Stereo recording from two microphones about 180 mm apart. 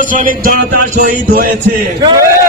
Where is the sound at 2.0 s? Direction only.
25° right (ahead or behind).